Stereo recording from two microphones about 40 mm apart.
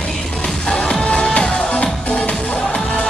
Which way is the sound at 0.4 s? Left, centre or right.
Left.